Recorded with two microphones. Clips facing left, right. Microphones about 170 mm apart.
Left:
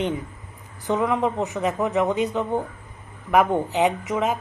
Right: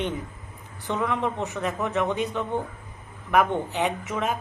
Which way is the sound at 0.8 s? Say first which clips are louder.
Left 4 dB; 15° left (ahead or behind).